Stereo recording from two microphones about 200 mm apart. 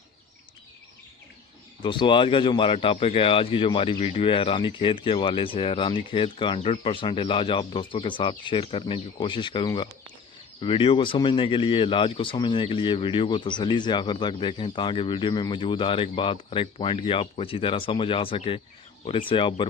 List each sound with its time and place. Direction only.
1.8 s speech: 25° left (ahead or behind)